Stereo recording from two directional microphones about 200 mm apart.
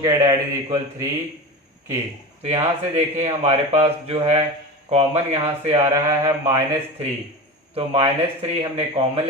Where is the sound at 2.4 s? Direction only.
30° right (ahead or behind).